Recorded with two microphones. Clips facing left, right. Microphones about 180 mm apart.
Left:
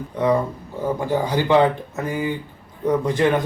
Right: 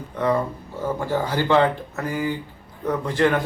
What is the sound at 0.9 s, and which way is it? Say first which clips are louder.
A man's voice: left 2 dB; 15° left (ahead or behind).